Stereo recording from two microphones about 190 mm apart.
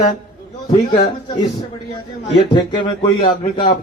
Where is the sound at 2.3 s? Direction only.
25° left (ahead or behind).